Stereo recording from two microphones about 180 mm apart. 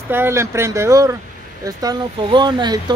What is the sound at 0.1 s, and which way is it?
Speech, 15° right (ahead or behind).